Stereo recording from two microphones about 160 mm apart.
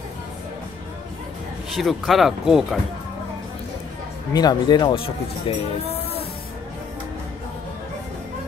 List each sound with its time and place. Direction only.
1.8 s speech: centre (ahead or behind)
4.3 s speech: 25° left (ahead or behind)